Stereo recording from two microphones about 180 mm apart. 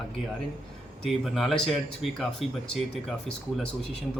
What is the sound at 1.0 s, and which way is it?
Speech, centre (ahead or behind).